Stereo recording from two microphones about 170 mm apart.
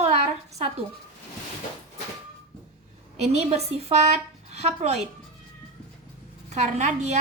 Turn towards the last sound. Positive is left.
turn(degrees=-45)  # may be behind; listen again after turning